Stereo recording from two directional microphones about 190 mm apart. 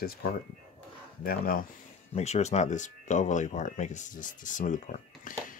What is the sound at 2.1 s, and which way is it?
Speech, 35° left (ahead or behind).